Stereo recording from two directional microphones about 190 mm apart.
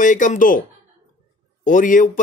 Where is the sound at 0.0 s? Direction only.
40° left (ahead or behind).